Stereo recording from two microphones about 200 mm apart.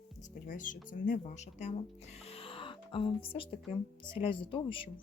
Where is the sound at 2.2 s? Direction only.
30° left (ahead or behind).